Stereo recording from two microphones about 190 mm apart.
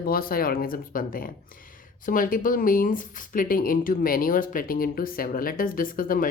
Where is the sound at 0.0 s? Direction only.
50° left (ahead or behind).